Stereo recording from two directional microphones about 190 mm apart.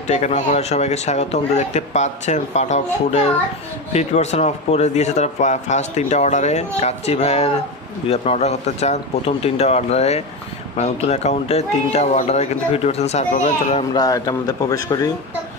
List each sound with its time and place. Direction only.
0.0 s speech: 35° left (ahead or behind)
13.9 s a man's voice: 20° left (ahead or behind)